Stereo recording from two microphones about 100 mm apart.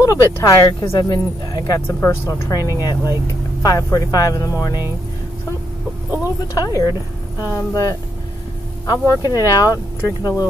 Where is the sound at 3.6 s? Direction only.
35° left (ahead or behind).